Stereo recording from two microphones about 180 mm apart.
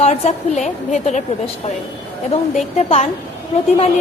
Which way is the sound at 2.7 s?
35° left (ahead or behind).